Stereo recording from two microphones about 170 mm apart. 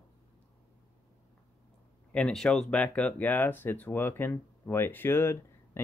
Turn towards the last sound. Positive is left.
turn(degrees=15)  # may be behind; listen again after turning